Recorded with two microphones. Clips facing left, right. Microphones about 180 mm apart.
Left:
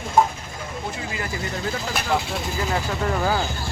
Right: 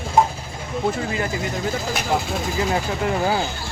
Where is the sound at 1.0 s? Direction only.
40° right (ahead or behind).